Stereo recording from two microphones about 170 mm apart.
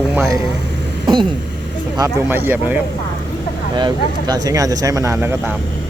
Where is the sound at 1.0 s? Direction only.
25° right (ahead or behind).